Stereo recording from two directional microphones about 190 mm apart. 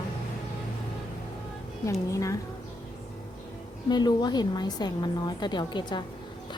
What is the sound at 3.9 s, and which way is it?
A woman's voice, 20° left (ahead or behind).